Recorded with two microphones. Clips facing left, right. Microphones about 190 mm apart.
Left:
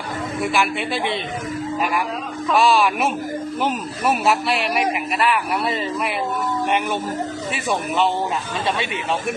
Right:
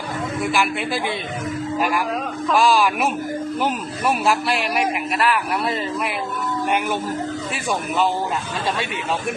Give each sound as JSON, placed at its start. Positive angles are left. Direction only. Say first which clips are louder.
{"t": 0.5, "sound": "a man's voice", "louder": "left 1 dB", "side_deg": 0}
{"t": 2.5, "sound": "a man's voice", "louder": "left 1 dB", "side_deg": 0}
{"t": 7.5, "sound": "a man's voice", "louder": "left 2 dB", "side_deg": 0}